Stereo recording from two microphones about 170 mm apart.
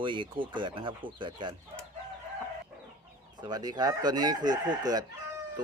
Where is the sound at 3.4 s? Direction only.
25° right (ahead or behind).